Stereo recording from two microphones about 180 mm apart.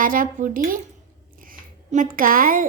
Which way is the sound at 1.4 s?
50° right (ahead or behind).